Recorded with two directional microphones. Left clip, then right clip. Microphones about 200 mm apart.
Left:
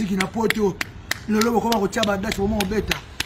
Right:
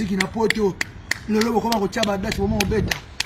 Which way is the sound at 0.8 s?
5° left (ahead or behind).